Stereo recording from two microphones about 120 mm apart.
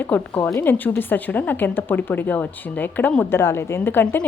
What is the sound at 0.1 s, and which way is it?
A woman's voice, 15° left (ahead or behind).